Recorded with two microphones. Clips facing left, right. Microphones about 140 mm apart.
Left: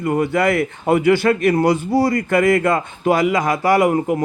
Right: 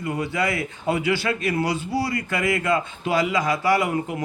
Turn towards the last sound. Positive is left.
turn(degrees=45)  # may be behind; listen again after turning